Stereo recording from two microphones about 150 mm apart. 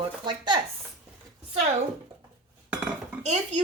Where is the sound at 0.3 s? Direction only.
25° right (ahead or behind).